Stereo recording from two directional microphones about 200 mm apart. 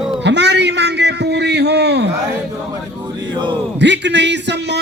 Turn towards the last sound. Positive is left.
turn(degrees=-60)  # may be behind; listen again after turning